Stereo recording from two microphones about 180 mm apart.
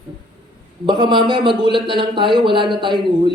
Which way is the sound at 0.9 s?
25° right (ahead or behind).